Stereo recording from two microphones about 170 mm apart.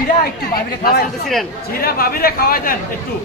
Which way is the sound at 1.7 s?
60° left (ahead or behind).